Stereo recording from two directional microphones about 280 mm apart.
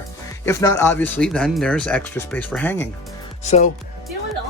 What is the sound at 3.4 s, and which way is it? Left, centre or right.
Speech, left.